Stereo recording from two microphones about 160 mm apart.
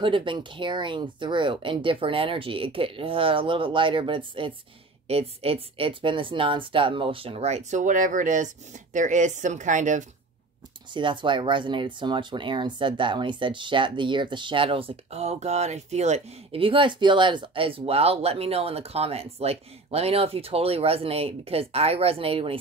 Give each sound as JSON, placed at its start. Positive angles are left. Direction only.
{"t": 0.0, "sound": "speech", "side_deg": -30}
{"t": 10.9, "sound": "speech", "side_deg": -30}